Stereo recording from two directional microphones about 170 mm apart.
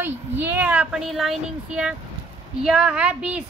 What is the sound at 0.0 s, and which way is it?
A woman's voice, 10° right (ahead or behind).